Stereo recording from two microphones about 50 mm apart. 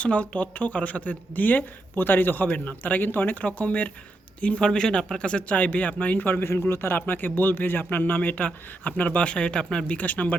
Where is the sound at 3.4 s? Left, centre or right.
Left.